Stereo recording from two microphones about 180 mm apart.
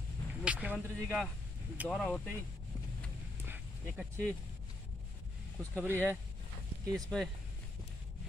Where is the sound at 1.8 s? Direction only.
Centre (ahead or behind).